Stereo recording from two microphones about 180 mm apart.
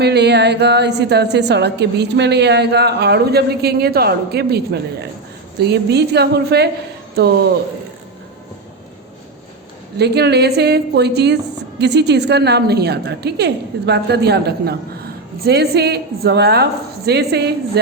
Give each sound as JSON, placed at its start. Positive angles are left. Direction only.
{"t": 0.0, "sound": "a woman's voice", "side_deg": -70}
{"t": 10.0, "sound": "a woman's voice", "side_deg": -65}